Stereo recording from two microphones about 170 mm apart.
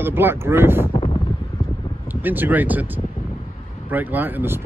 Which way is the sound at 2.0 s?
10° right (ahead or behind).